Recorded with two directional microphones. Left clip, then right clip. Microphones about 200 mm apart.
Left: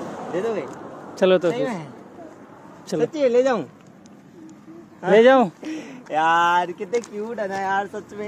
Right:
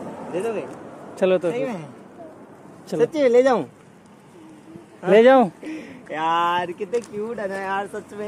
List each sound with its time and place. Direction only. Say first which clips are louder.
0.3 s speech: left 1 dB; 30° left (ahead or behind)
1.1 s a man's voice: left 2 dB; 5° left (ahead or behind)
1.5 s speech: left 1 dB; 25° left (ahead or behind)
3.0 s speech: right 2 dB; 35° right (ahead or behind)
5.1 s speech: right 1 dB; 5° right (ahead or behind)
5.7 s speech: left 3 dB; 45° left (ahead or behind)
6.9 s speech: even; 20° left (ahead or behind)